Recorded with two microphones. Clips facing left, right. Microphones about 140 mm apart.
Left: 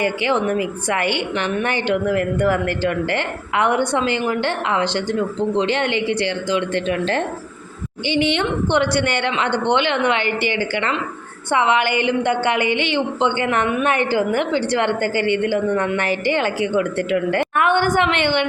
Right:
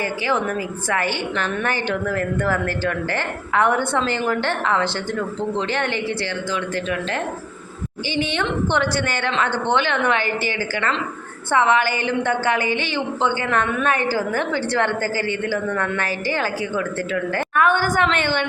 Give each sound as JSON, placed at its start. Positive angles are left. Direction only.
{"t": 0.0, "sound": "a woman's voice", "side_deg": 20}
{"t": 11.5, "sound": "a woman's voice", "side_deg": 15}
{"t": 15.0, "sound": "a woman's voice", "side_deg": -40}
{"t": 15.3, "sound": "a woman's voice", "side_deg": 20}